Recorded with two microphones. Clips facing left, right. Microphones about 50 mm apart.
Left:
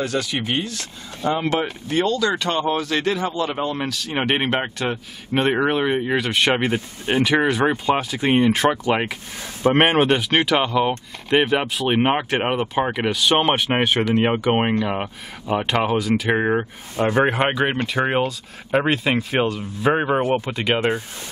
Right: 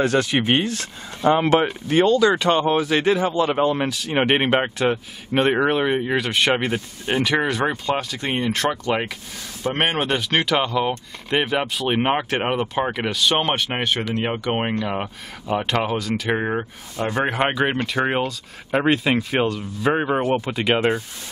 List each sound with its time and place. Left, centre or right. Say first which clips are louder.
0.0 s speech: right 4 dB; right
1.3 s speech: right 4 dB; centre
9.6 s speech: left 6 dB; left
9.8 s speech: left 4 dB; centre
17.0 s a man's voice: left 4 dB; left
17.4 s speech: even; centre